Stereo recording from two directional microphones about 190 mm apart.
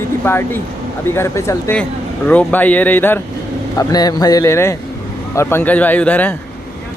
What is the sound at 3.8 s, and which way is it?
A man's voice, 20° left (ahead or behind).